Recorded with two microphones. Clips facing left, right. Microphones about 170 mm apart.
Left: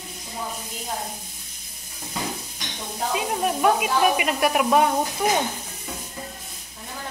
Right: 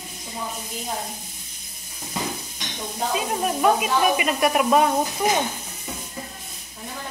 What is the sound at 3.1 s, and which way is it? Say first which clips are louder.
Speech: left 1 dB; 5° left (ahead or behind).